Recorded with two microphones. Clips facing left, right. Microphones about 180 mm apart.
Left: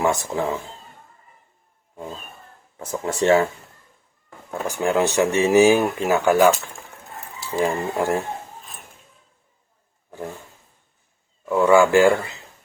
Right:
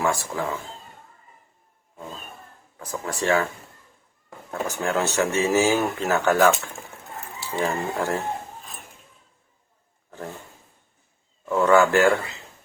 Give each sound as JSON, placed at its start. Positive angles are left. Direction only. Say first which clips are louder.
{"t": 0.0, "sound": "speech", "louder": "left 3 dB", "side_deg": 20}
{"t": 2.7, "sound": "speech", "louder": "left 5 dB", "side_deg": 25}
{"t": 4.6, "sound": "speech", "louder": "left 4 dB", "side_deg": 15}
{"t": 7.1, "sound": "chicken", "louder": "left 3 dB", "side_deg": 0}
{"t": 7.6, "sound": "speech", "louder": "left 3 dB", "side_deg": 15}
{"t": 11.4, "sound": "speech", "louder": "left 2 dB", "side_deg": 10}